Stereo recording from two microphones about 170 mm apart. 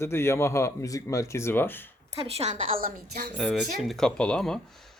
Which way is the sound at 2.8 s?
60° right (ahead or behind).